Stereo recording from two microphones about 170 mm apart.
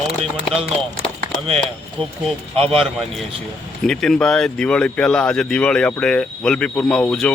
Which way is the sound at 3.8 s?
5° left (ahead or behind).